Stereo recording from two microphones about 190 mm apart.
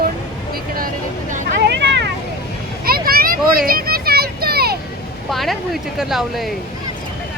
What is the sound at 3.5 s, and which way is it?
Children playing, 50° right (ahead or behind).